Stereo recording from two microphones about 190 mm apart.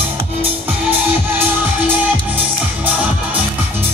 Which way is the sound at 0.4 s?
10° right (ahead or behind).